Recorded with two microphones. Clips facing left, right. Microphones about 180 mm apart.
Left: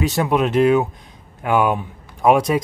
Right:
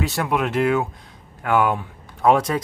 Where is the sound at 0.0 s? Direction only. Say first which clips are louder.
Left 4 dB; 20° left (ahead or behind).